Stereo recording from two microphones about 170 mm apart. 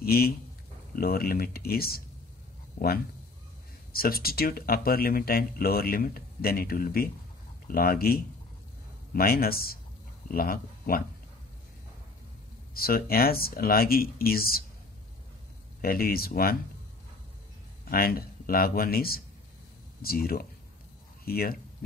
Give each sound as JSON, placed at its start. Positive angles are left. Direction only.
{"t": 0.0, "sound": "speech", "side_deg": 60}
{"t": 3.9, "sound": "speech", "side_deg": 60}
{"t": 12.7, "sound": "speech", "side_deg": 60}
{"t": 15.8, "sound": "speech", "side_deg": 60}
{"t": 17.8, "sound": "speech", "side_deg": 60}